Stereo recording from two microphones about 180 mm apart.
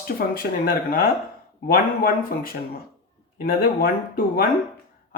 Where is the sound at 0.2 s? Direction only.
55° left (ahead or behind).